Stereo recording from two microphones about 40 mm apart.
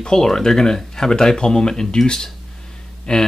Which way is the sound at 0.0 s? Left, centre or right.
Centre.